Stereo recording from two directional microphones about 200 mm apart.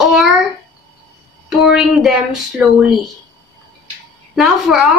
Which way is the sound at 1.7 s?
Centre (ahead or behind).